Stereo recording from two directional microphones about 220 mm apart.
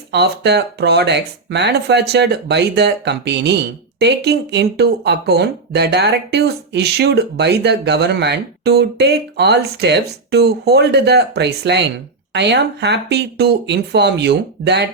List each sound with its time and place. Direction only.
0.1 s speech: 50° right (ahead or behind)